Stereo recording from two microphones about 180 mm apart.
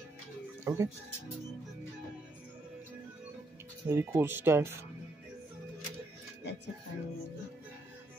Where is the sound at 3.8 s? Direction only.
15° right (ahead or behind).